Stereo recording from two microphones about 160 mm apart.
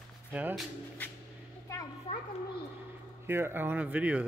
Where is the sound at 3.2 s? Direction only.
15° right (ahead or behind).